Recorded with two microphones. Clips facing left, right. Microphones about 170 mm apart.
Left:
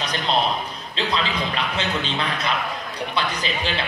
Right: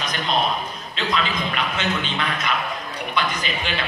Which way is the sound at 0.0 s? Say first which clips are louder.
Left 1 dB; 35° left (ahead or behind).